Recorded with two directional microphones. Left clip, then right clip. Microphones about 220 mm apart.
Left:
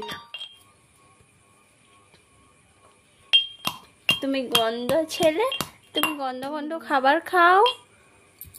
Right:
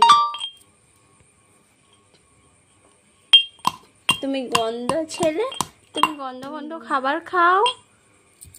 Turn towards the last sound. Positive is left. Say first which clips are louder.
# even
turn(degrees=20)  # may be behind; listen again after turning